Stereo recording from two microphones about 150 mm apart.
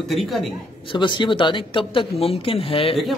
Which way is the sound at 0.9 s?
35° left (ahead or behind).